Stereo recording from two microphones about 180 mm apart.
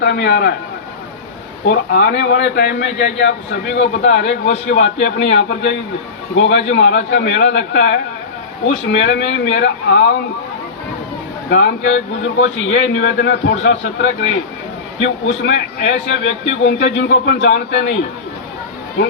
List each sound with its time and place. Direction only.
0.0 s speech: 70° left (ahead or behind)
1.7 s speech: 70° left (ahead or behind)
6.3 s speech: 85° left; by 10.2 s 70° left (ahead or behind)
11.4 s a man's voice: 70° left (ahead or behind)
15.3 s a man's voice: 85° left